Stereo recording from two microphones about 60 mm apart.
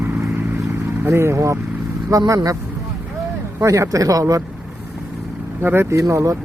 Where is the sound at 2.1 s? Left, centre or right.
Right.